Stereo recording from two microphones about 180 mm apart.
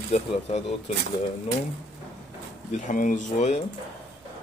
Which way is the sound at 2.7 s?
45° left (ahead or behind).